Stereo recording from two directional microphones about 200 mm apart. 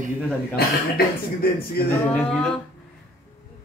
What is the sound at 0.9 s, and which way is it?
Speech, 50° left (ahead or behind).